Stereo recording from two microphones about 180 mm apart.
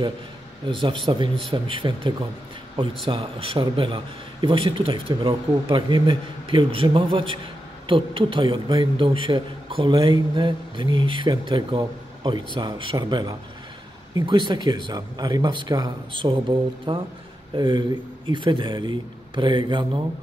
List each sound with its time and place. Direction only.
0.7 s a man's voice: 25° right (ahead or behind)